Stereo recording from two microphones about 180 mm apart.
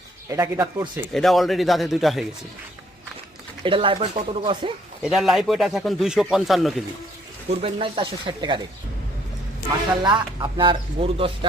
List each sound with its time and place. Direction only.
0.3 s speech: 15° right (ahead or behind)
1.1 s speech: centre (ahead or behind)
3.6 s speech: 30° right (ahead or behind)
5.0 s speech: centre (ahead or behind)
7.6 s speech: 30° right (ahead or behind)
10.0 s speech: 25° right (ahead or behind)